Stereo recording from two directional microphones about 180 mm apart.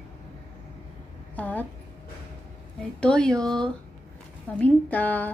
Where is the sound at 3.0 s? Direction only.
5° left (ahead or behind).